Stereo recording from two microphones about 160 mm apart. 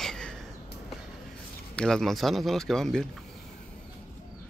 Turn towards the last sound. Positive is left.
turn(degrees=5)  # may be behind; listen again after turning